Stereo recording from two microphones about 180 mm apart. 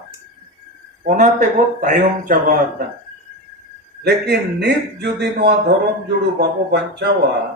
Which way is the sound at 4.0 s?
65° right (ahead or behind).